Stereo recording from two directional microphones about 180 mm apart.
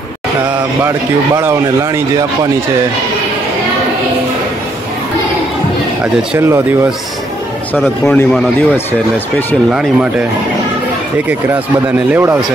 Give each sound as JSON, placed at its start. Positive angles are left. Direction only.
{"t": 0.8, "sound": "a man's voice", "side_deg": -15}
{"t": 6.3, "sound": "a man's voice", "side_deg": -15}
{"t": 8.0, "sound": "speech", "side_deg": 5}
{"t": 9.7, "sound": "speech", "side_deg": -5}
{"t": 12.1, "sound": "a man's voice", "side_deg": -15}